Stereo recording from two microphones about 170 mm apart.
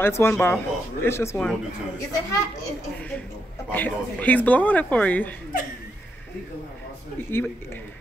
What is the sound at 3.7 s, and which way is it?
A man's voice, 10° left (ahead or behind).